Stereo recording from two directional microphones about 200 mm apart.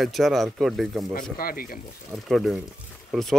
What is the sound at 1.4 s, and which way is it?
Speech, 45° left (ahead or behind).